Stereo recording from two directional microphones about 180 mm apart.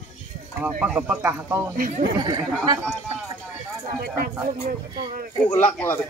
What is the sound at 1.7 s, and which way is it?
Speech, 50° right (ahead or behind).